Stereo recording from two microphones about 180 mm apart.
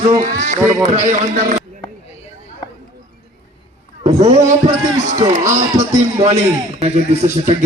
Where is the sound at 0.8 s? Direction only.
40° right (ahead or behind).